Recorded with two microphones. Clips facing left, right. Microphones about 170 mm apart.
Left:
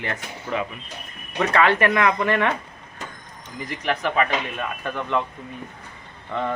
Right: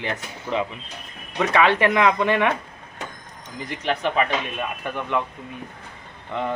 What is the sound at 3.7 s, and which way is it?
Speech, 20° right (ahead or behind).